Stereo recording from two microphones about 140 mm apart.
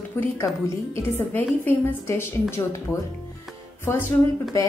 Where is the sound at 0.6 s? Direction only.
20° left (ahead or behind).